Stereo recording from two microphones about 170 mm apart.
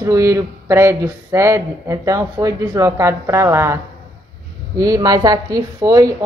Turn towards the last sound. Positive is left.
turn(degrees=-20)  # may be behind; listen again after turning